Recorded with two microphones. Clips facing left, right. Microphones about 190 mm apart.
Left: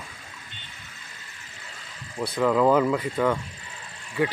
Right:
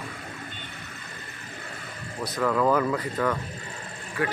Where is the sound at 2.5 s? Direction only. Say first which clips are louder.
Left 3 dB; 20° left (ahead or behind).